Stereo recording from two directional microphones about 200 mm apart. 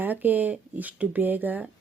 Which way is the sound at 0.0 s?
10° right (ahead or behind).